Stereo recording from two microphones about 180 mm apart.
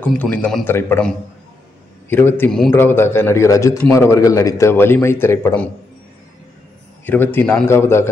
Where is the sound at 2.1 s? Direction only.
10° left (ahead or behind).